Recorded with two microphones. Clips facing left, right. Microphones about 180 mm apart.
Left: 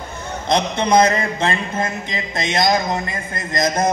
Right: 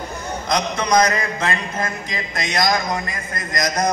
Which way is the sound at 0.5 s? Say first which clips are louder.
Left 3 dB; 25° left (ahead or behind).